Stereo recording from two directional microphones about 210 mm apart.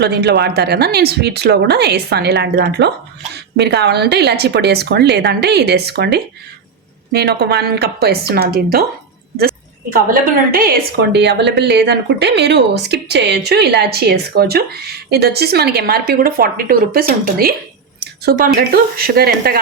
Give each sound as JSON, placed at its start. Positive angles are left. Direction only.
{"t": 0.0, "sound": "a woman's voice", "side_deg": -50}